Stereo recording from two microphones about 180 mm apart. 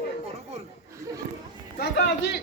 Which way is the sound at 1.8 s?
70° left (ahead or behind).